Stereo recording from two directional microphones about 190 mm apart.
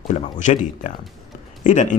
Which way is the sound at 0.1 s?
40° left (ahead or behind).